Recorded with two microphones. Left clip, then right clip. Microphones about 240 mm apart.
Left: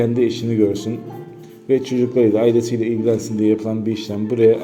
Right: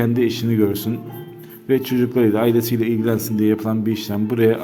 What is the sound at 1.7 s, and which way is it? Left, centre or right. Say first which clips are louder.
A man's voice: left 2 dB; right.